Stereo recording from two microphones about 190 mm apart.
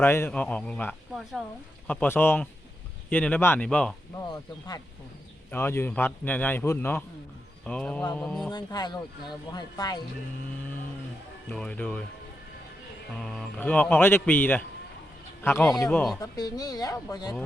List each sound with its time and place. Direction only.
0.0 s a man's voice: 10° left (ahead or behind)
1.9 s a man's voice: 10° left (ahead or behind)
4.3 s a man's voice: 20° left (ahead or behind)
8.4 s speech: 20° left (ahead or behind)
11.4 s speech: 5° left (ahead or behind)
13.1 s a man's voice: centre (ahead or behind)
16.2 s speech: 20° left (ahead or behind)